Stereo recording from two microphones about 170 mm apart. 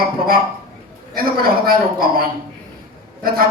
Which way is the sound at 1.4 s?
60° right (ahead or behind).